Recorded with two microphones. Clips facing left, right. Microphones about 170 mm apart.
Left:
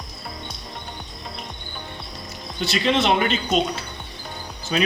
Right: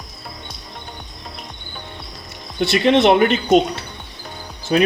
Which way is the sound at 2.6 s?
60° right (ahead or behind).